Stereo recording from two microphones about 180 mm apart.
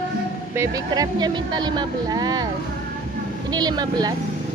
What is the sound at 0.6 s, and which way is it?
Speech, 20° right (ahead or behind).